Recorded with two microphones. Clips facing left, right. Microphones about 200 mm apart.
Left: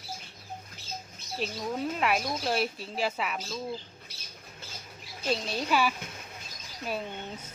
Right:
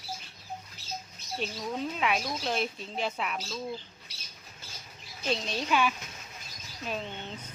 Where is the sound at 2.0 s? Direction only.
5° left (ahead or behind).